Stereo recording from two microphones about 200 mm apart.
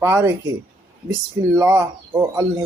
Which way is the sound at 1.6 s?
15° right (ahead or behind).